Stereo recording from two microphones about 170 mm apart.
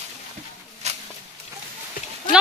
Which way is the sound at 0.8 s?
40° right (ahead or behind).